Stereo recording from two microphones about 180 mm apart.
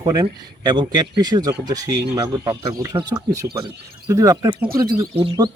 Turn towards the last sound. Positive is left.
turn(degrees=-25)  # may be behind; listen again after turning